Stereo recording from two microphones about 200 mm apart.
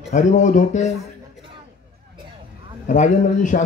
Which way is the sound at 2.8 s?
40° left (ahead or behind).